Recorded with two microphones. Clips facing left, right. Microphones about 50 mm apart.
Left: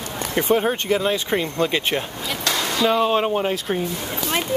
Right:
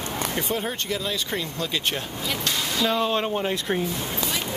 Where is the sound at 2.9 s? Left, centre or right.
Centre.